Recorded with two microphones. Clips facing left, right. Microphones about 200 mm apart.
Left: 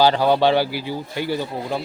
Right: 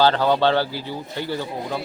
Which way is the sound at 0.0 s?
15° left (ahead or behind).